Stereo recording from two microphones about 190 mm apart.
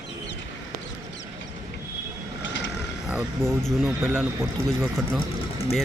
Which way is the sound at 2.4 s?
75° left (ahead or behind).